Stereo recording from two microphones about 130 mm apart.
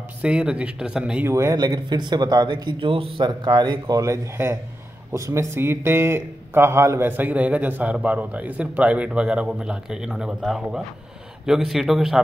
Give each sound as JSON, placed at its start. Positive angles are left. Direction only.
{"t": 0.2, "sound": "a man's voice", "side_deg": -10}
{"t": 1.2, "sound": "speech", "side_deg": -25}
{"t": 3.3, "sound": "a man's voice", "side_deg": -30}